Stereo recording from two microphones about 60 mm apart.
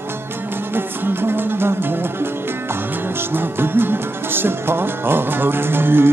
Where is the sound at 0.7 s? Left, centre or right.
Right.